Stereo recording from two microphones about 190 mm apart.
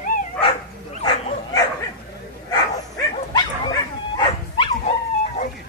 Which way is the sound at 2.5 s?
20° left (ahead or behind).